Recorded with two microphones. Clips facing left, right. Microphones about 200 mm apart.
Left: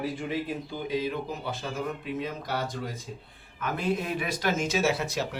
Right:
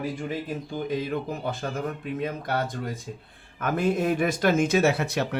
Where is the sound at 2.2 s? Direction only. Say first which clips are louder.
Right 7 dB; 55° right (ahead or behind).